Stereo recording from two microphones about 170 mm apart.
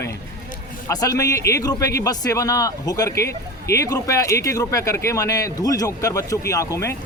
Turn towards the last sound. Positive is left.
turn(degrees=15)  # may be behind; listen again after turning